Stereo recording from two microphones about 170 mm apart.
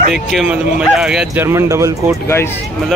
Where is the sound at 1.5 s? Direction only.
15° right (ahead or behind).